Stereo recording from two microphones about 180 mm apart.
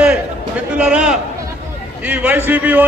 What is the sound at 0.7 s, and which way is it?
A man's voice, 5° right (ahead or behind).